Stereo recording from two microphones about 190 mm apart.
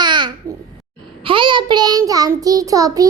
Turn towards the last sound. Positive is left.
turn(degrees=-20)  # may be behind; listen again after turning